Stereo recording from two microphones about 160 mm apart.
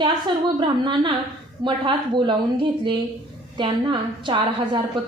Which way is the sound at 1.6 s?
30° right (ahead or behind).